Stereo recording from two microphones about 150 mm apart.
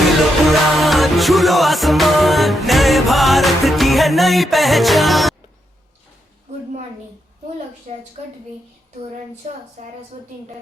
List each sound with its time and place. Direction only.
0.4 s music: centre (ahead or behind)
7.9 s a woman's voice: 50° right (ahead or behind)
9.8 s a woman's voice: 55° right (ahead or behind)